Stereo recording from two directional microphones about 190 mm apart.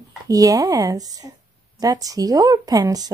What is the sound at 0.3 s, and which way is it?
Speech, 20° right (ahead or behind).